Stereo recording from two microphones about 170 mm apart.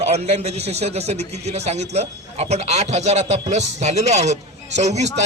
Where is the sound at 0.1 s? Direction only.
40° right (ahead or behind).